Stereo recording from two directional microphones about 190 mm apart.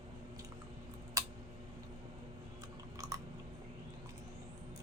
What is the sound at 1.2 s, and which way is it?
Tick, 15° right (ahead or behind).